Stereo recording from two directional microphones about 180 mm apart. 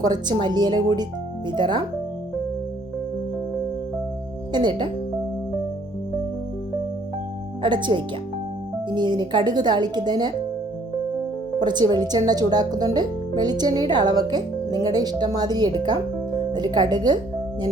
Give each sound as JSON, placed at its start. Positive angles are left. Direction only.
{"t": 0.0, "sound": "speech", "side_deg": -25}
{"t": 4.5, "sound": "speech", "side_deg": -25}
{"t": 7.6, "sound": "speech", "side_deg": -25}
{"t": 11.6, "sound": "speech", "side_deg": -25}